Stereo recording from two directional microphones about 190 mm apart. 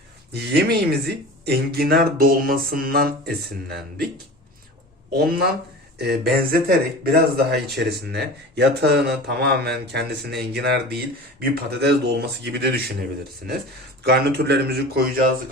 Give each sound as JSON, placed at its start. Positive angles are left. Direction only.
{"t": 0.3, "sound": "speech", "side_deg": -60}
{"t": 5.1, "sound": "speech", "side_deg": -55}
{"t": 14.0, "sound": "speech", "side_deg": -55}